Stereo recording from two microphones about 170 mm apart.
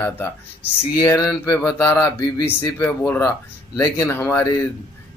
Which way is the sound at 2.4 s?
10° left (ahead or behind).